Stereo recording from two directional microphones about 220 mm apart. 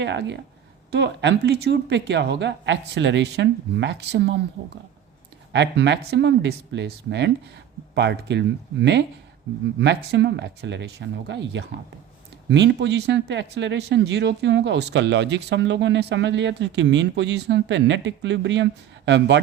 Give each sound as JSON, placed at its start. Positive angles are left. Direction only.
{"t": 0.0, "sound": "speech", "side_deg": -55}
{"t": 5.5, "sound": "speech", "side_deg": -50}